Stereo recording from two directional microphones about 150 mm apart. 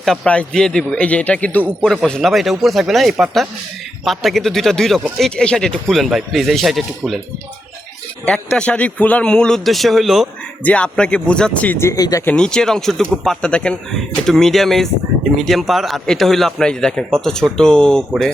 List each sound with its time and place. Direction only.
0.0 s speech: 5° left (ahead or behind)
8.2 s speech: 5° left (ahead or behind); by 12.2 s 25° left (ahead or behind)
12.2 s speech: 5° left (ahead or behind)